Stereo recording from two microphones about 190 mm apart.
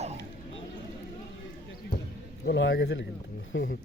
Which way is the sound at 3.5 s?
85° left.